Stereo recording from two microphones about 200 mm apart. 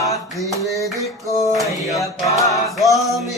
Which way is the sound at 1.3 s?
15° left (ahead or behind).